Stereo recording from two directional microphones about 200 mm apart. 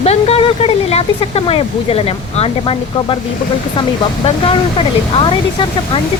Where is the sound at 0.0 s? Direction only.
30° left (ahead or behind).